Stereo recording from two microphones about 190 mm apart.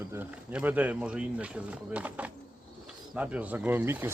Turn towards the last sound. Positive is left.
turn(degrees=-10)  # may be behind; listen again after turning